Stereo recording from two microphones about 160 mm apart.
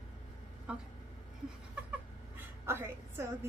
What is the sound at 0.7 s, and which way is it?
Speech, 5° right (ahead or behind).